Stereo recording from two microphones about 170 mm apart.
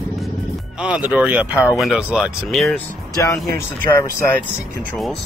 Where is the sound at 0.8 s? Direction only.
5° right (ahead or behind).